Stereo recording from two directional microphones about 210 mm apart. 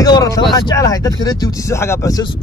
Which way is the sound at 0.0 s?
15° left (ahead or behind).